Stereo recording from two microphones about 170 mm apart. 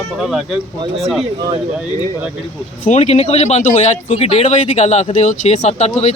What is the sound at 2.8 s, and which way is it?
Speech, 45° left (ahead or behind).